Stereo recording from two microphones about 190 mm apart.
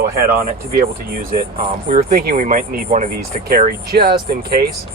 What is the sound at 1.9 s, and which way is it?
Speech, 50° right (ahead or behind).